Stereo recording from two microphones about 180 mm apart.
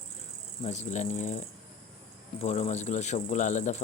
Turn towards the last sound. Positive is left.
turn(degrees=40)  # may be behind; listen again after turning